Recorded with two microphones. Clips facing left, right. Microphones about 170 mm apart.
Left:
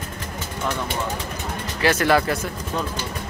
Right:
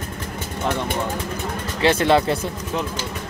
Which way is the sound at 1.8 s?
25° right (ahead or behind).